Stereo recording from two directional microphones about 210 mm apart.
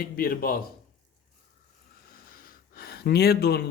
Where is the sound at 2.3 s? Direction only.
45° left (ahead or behind).